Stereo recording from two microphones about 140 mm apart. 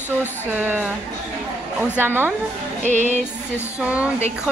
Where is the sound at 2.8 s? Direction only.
60° right (ahead or behind).